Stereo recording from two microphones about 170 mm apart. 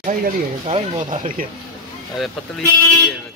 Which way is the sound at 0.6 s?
35° right (ahead or behind).